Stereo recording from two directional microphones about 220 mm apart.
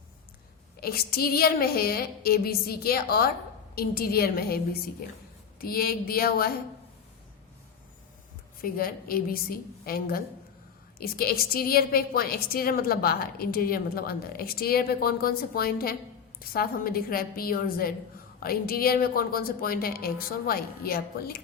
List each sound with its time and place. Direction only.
0.8 s a woman's voice: 45° left (ahead or behind)
8.6 s a woman's voice: 40° left (ahead or behind)